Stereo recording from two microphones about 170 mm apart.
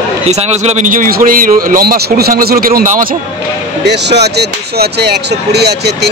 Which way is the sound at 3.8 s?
85° right.